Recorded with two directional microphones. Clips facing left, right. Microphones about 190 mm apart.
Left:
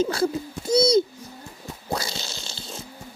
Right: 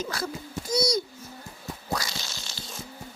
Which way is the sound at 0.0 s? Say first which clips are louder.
Left 10 dB; 30° left (ahead or behind).